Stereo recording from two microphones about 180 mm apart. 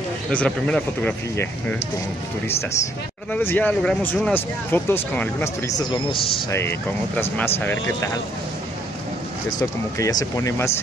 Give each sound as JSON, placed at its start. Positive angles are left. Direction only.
{"t": 0.3, "sound": "speech", "side_deg": 5}
{"t": 3.3, "sound": "speech", "side_deg": 10}
{"t": 9.6, "sound": "speech", "side_deg": 20}